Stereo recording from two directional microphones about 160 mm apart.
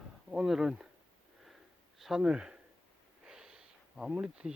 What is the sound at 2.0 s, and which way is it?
Speech, centre (ahead or behind).